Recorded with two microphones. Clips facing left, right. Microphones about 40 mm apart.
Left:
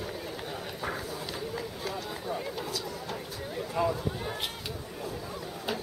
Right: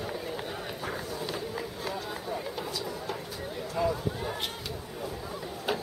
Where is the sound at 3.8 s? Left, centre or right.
Left.